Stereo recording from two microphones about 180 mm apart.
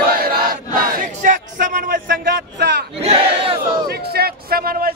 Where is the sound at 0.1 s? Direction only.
55° right (ahead or behind).